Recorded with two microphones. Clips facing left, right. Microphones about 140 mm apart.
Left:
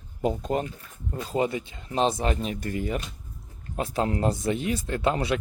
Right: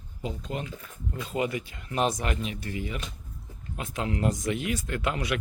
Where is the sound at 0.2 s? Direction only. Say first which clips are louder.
Left 8 dB; 50° left (ahead or behind).